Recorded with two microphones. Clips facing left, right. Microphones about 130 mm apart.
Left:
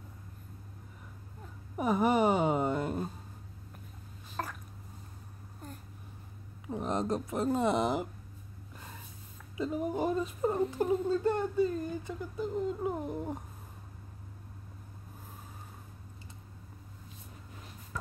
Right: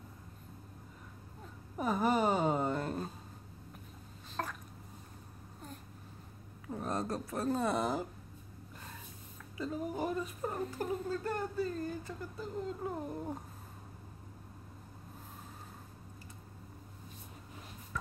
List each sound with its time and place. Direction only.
1.8 s speech: 15° left (ahead or behind)
4.4 s a sound: centre (ahead or behind)
6.7 s speech: 20° left (ahead or behind)
9.6 s speech: 20° left (ahead or behind)